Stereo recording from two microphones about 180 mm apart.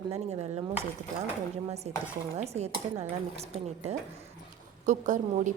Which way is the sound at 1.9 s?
35° right (ahead or behind).